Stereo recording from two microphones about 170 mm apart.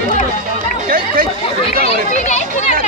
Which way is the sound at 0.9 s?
55° right (ahead or behind).